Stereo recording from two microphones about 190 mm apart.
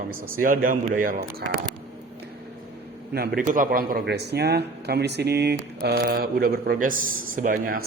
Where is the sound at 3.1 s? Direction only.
55° right (ahead or behind).